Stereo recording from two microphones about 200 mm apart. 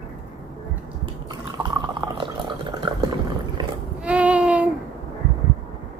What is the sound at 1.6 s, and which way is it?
Drip, 20° right (ahead or behind).